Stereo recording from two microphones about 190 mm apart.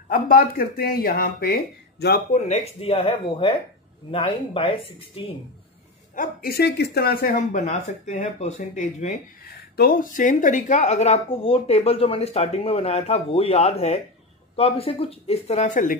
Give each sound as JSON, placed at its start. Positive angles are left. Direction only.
{"t": 0.1, "sound": "speech", "side_deg": 50}
{"t": 2.3, "sound": "speech", "side_deg": 35}
{"t": 6.1, "sound": "a woman's voice", "side_deg": 50}
{"t": 9.5, "sound": "a woman's voice", "side_deg": 50}